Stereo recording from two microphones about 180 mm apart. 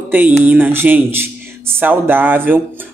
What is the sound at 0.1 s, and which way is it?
Speech, 10° right (ahead or behind).